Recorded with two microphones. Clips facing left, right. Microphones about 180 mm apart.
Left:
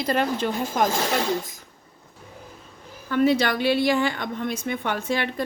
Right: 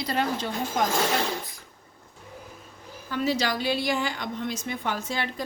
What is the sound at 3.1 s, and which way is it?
A woman's voice, 55° left (ahead or behind).